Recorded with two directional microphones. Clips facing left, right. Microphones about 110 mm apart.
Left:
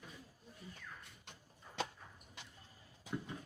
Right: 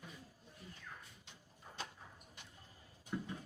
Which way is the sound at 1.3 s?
85° left.